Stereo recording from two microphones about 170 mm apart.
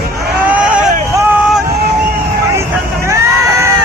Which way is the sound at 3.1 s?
15° right (ahead or behind).